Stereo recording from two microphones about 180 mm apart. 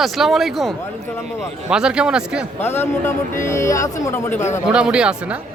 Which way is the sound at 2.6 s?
10° left (ahead or behind).